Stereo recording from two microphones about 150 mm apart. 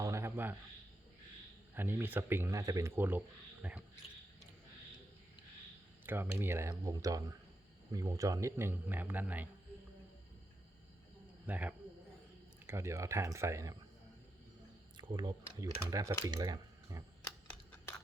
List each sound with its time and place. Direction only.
0.0 s a sound: 20° right (ahead or behind)
1.7 s speech: 15° right (ahead or behind)
6.1 s speech: 15° right (ahead or behind)
11.4 s a man's voice: 10° right (ahead or behind)
14.9 s speech: 30° right (ahead or behind)